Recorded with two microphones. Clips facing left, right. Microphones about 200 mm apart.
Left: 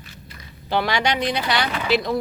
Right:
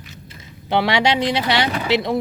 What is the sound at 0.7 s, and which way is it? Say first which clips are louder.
Speech: right 4 dB; 25° right (ahead or behind).